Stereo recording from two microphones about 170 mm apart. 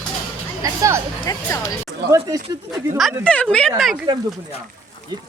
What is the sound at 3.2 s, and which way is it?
Speech, 5° left (ahead or behind).